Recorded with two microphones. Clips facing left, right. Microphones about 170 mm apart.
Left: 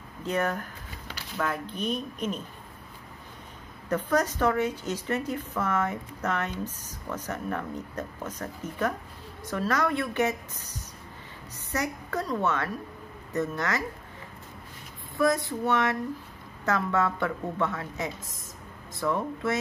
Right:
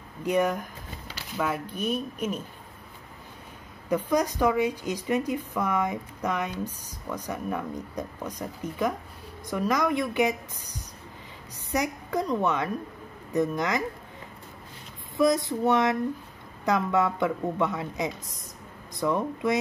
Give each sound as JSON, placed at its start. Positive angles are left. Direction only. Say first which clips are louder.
{"t": 0.2, "sound": "a woman's voice", "louder": "right 4 dB", "side_deg": -10}
{"t": 3.9, "sound": "a woman's voice", "louder": "right 1 dB", "side_deg": -15}
{"t": 15.1, "sound": "a sound", "louder": "right 2 dB", "side_deg": -20}
{"t": 16.6, "sound": "a woman's voice", "louder": "right 2 dB", "side_deg": -15}